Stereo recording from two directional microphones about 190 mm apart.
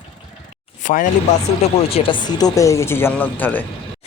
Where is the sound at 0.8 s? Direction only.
40° left (ahead or behind).